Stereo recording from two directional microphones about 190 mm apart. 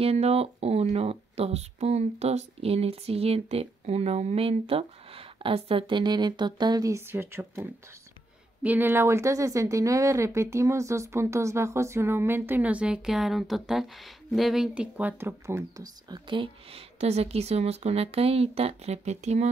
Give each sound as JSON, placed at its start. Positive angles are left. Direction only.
{"t": 0.0, "sound": "speech", "side_deg": -35}
{"t": 8.6, "sound": "speech", "side_deg": -10}